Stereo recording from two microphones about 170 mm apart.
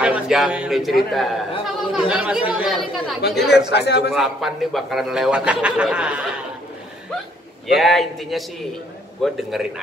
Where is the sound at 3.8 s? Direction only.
80° left.